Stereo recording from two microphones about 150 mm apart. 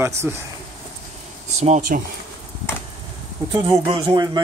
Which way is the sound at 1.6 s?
50° right (ahead or behind).